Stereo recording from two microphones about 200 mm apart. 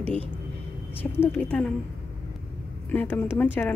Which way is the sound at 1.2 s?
5° left (ahead or behind).